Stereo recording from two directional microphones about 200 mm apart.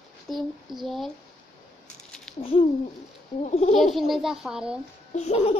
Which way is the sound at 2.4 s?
30° left (ahead or behind).